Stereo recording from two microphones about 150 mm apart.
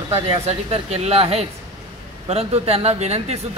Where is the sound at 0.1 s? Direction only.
40° right (ahead or behind).